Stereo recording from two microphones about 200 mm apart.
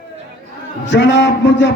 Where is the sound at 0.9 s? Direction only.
65° left (ahead or behind).